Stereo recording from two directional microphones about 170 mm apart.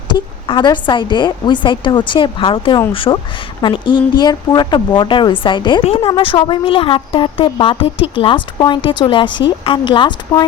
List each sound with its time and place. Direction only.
0.1 s a woman's voice: 25° left (ahead or behind)